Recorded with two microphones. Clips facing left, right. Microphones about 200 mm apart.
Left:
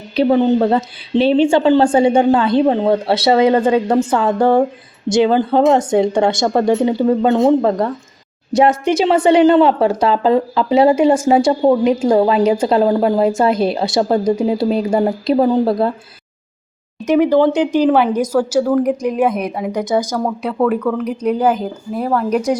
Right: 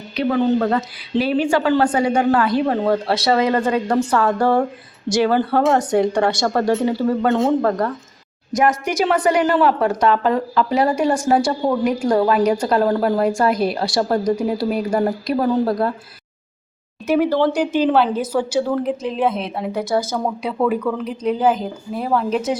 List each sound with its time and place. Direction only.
0.2 s a woman's voice: 25° left (ahead or behind)
17.1 s a woman's voice: 15° left (ahead or behind)
20.1 s speech: centre (ahead or behind)
21.0 s a woman's voice: 10° left (ahead or behind)